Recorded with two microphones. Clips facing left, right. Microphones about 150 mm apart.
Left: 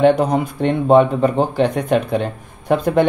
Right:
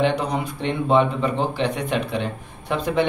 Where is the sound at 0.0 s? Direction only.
45° left (ahead or behind).